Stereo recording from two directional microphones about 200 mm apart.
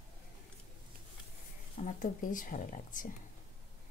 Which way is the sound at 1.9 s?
40° left (ahead or behind).